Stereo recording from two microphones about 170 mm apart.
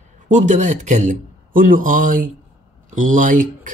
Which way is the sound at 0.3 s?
45° right (ahead or behind).